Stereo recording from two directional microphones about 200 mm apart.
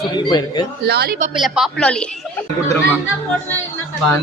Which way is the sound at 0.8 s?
55° right (ahead or behind).